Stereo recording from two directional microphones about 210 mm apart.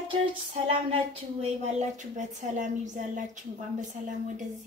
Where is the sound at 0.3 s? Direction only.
25° right (ahead or behind).